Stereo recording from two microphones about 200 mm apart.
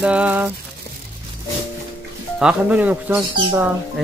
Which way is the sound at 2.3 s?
5° right (ahead or behind).